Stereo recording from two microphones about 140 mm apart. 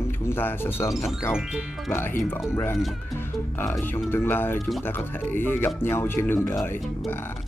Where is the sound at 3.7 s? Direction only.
15° left (ahead or behind).